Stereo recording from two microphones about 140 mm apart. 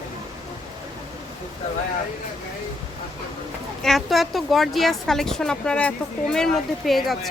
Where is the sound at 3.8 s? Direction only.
Centre (ahead or behind).